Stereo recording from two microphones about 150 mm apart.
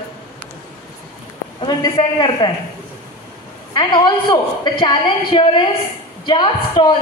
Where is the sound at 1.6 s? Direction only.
30° left (ahead or behind).